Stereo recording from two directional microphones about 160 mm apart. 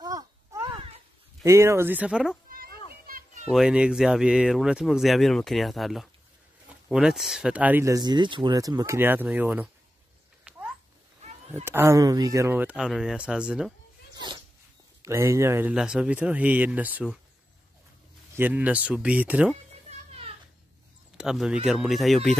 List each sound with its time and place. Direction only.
0.0 s a sound: 20° right (ahead or behind)
1.4 s speech: 20° right (ahead or behind)
2.9 s children playing: 60° right (ahead or behind)
3.4 s speech: 5° right (ahead or behind)
10.5 s a sound: 5° right (ahead or behind)
11.6 s speech: 15° right (ahead or behind)
14.1 s dog: 30° right (ahead or behind)
15.0 s speech: 20° right (ahead or behind)
15.7 s speech: 5° right (ahead or behind)
18.3 s speech: 10° right (ahead or behind)
20.1 s a sound: 40° right (ahead or behind)
21.2 s speech: 5° right (ahead or behind)